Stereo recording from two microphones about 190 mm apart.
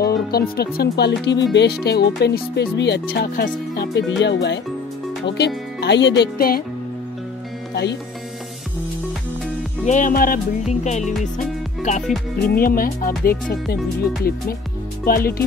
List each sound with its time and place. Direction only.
0.0 s speech: 55° left (ahead or behind)
5.8 s speech: 65° left (ahead or behind)
7.7 s speech: 65° left (ahead or behind)
9.8 s speech: 45° left (ahead or behind)
12.4 s speech: 50° left (ahead or behind)
15.0 s speech: 50° left (ahead or behind)